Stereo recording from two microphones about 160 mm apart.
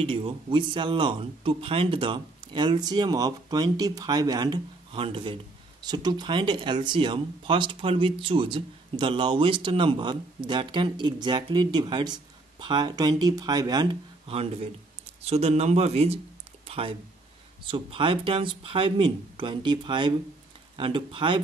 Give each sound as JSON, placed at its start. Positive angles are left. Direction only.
{"t": 0.0, "sound": "speech", "side_deg": -35}
{"t": 14.2, "sound": "speech", "side_deg": -40}
{"t": 16.6, "sound": "a sound", "side_deg": -35}
{"t": 17.6, "sound": "speech", "side_deg": -35}